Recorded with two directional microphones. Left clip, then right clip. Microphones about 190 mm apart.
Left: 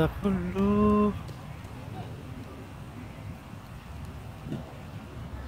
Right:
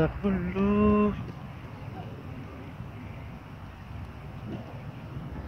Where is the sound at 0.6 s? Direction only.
15° left (ahead or behind).